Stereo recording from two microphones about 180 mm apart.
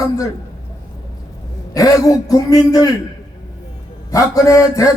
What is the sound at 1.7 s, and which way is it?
A man's voice, 20° left (ahead or behind).